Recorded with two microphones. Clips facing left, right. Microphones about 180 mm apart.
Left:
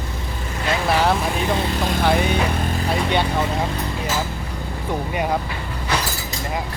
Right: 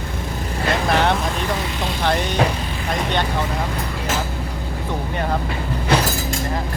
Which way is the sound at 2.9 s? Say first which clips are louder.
Left 1 dB; 10° left (ahead or behind).